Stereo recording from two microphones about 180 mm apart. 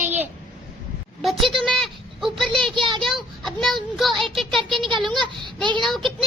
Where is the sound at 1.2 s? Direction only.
Centre (ahead or behind).